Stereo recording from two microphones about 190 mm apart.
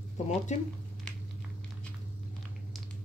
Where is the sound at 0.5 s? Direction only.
40° left (ahead or behind).